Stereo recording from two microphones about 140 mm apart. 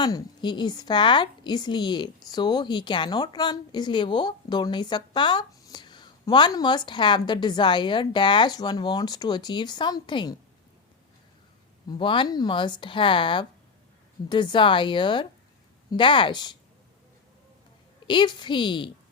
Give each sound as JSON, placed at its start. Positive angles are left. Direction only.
{"t": 0.0, "sound": "a woman's voice", "side_deg": 35}
{"t": 11.9, "sound": "a woman's voice", "side_deg": 35}
{"t": 18.1, "sound": "a woman's voice", "side_deg": 35}